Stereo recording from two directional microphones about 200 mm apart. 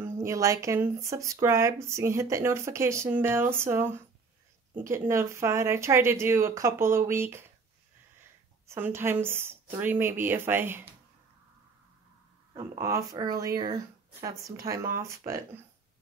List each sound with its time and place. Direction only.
0.0 s speech: 15° right (ahead or behind)
8.6 s speech: 10° right (ahead or behind)
12.5 s speech: 15° right (ahead or behind)